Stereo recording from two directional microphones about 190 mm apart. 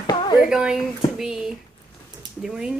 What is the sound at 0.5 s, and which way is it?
Speech, 5° right (ahead or behind).